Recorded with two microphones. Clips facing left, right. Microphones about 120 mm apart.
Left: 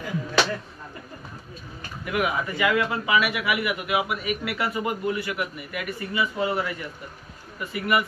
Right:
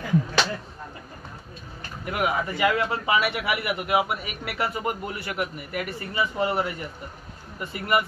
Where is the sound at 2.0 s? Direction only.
35° right (ahead or behind).